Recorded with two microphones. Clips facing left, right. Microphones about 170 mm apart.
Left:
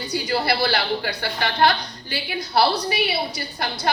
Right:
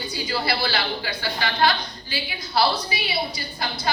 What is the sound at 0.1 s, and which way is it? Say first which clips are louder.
A woman's voice: left 4 dB; 65° left (ahead or behind).